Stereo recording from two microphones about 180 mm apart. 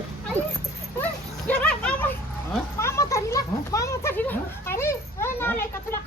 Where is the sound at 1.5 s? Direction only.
5° left (ahead or behind).